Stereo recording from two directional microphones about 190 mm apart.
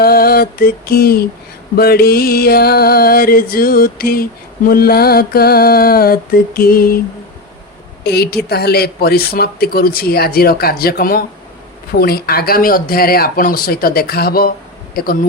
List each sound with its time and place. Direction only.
0.0 s music: 55° left (ahead or behind)
8.0 s a woman's voice: 60° left (ahead or behind)
8.4 s music: 55° left (ahead or behind)